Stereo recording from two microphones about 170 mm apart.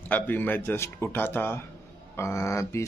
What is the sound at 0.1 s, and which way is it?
A man's voice, 10° left (ahead or behind).